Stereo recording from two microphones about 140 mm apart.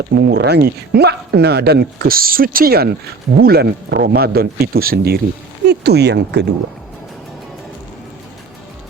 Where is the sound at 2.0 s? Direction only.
90° right.